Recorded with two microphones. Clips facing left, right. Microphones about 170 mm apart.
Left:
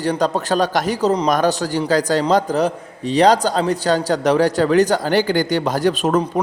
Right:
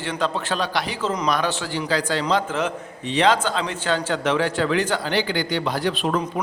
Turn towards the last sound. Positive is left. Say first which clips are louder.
# left 6 dB
turn(degrees=45)  # may be behind; listen again after turning